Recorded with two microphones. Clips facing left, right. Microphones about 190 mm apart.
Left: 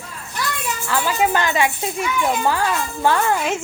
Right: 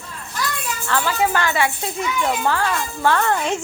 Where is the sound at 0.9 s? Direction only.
15° left (ahead or behind).